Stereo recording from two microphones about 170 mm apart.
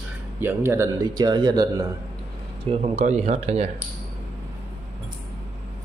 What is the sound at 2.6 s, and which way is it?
Speech, 40° right (ahead or behind).